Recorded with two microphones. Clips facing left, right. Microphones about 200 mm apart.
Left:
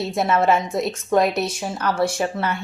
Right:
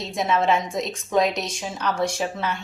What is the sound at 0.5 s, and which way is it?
Speech, 5° left (ahead or behind).